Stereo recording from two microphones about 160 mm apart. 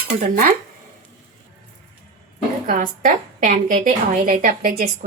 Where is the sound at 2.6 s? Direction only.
55° right (ahead or behind).